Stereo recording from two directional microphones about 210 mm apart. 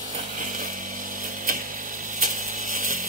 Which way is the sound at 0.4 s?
40° right (ahead or behind).